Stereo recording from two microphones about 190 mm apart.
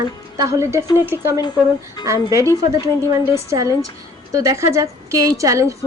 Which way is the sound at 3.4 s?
15° right (ahead or behind).